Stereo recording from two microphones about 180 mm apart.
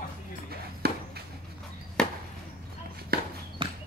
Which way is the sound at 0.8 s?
60° right (ahead or behind).